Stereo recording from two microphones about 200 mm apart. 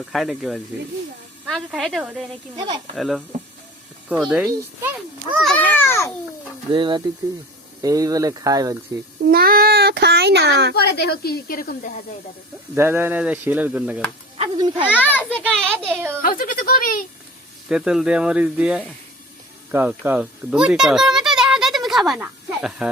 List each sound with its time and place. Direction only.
0.0 s a child's voice: centre (ahead or behind)
6.7 s a child's voice: 25° right (ahead or behind)
9.3 s a child's voice: 50° right (ahead or behind)
10.8 s speech: 55° left (ahead or behind)
12.7 s speech: 10° right (ahead or behind)
14.3 s a child's voice: 25° right (ahead or behind)
14.9 s speech: 10° left (ahead or behind)
16.2 s speech: 45° left (ahead or behind)
17.7 s speech: 5° right (ahead or behind)